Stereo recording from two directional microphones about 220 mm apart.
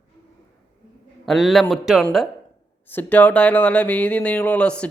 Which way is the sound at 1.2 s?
Centre (ahead or behind).